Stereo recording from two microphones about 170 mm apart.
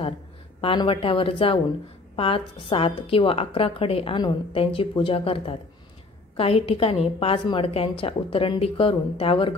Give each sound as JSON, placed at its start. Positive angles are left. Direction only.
{"t": 0.6, "sound": "a woman's voice", "side_deg": 30}